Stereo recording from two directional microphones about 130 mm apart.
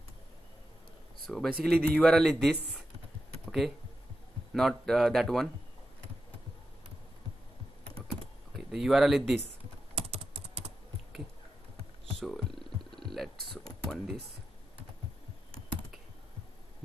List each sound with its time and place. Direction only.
1.2 s speech: 5° left (ahead or behind)
4.6 s speech: centre (ahead or behind)
8.5 s speech: centre (ahead or behind)
9.9 s typing: 50° right (ahead or behind)
12.2 s purr: centre (ahead or behind)
13.0 s mechanisms: centre (ahead or behind)